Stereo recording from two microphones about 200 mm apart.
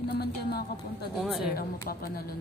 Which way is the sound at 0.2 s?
50° left (ahead or behind).